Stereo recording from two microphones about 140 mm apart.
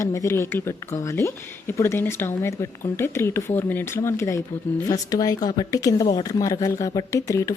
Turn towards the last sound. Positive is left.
turn(degrees=25)  # may be behind; listen again after turning